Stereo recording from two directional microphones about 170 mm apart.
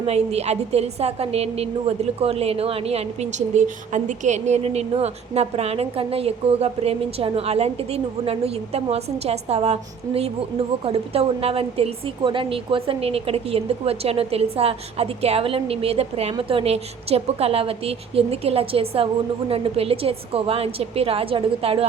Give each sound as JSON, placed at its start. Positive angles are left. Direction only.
{"t": 0.0, "sound": "a woman's voice", "side_deg": -40}
{"t": 10.8, "sound": "a woman's voice", "side_deg": -35}